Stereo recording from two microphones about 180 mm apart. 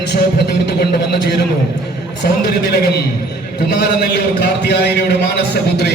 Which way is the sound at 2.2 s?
65° left (ahead or behind).